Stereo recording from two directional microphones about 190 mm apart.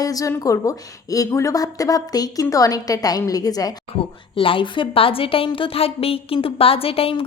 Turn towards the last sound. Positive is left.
turn(degrees=30)  # may be behind; listen again after turning